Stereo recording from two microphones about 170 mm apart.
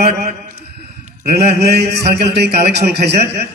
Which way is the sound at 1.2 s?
70° right (ahead or behind).